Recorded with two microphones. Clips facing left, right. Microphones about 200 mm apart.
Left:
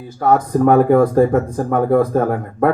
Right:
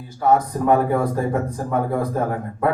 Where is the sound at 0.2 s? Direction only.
50° left (ahead or behind).